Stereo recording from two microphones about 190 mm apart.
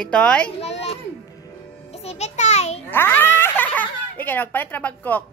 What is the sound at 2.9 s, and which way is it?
Speech, 10° left (ahead or behind).